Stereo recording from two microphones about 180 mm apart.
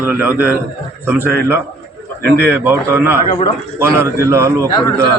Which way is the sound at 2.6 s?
15° right (ahead or behind).